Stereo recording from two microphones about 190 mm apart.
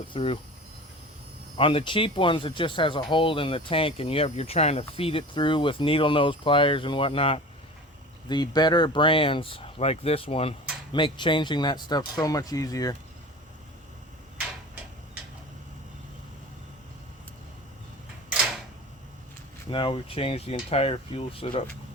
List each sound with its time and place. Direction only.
0.1 s speech: 30° left (ahead or behind)
1.5 s speech: 30° left (ahead or behind)
19.7 s speech: 25° left (ahead or behind)